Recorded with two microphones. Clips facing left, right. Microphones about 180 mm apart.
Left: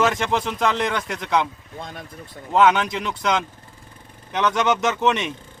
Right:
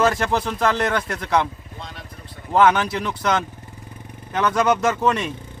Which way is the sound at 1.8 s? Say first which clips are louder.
Left 3 dB; 50° left (ahead or behind).